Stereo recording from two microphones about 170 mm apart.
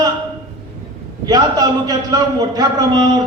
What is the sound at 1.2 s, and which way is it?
A man's voice, 25° right (ahead or behind).